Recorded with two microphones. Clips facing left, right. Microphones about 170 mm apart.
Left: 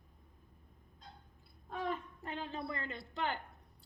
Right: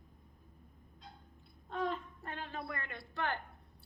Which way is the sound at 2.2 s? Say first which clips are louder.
Left 5 dB; 20° left (ahead or behind).